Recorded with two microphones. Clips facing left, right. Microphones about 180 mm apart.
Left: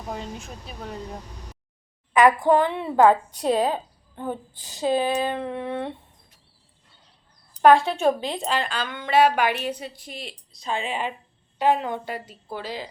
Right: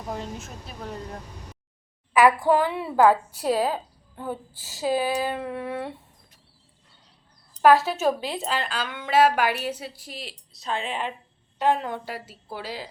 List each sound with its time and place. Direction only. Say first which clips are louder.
0.1 s speech: even; centre (ahead or behind)
2.5 s speech: left 2 dB; 5° right (ahead or behind)
3.4 s speech: left 2 dB; 20° left (ahead or behind)
4.6 s speech: left 2 dB; 5° right (ahead or behind)
7.6 s speech: left 2 dB; 5° right (ahead or behind)